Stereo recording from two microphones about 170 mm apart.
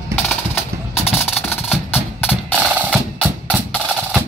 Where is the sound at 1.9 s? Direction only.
10° left (ahead or behind).